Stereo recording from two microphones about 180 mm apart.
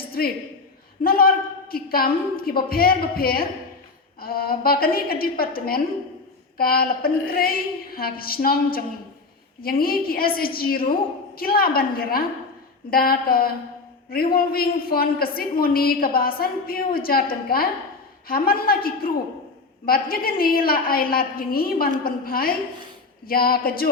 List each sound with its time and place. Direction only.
1.0 s a man's voice: 55° left (ahead or behind)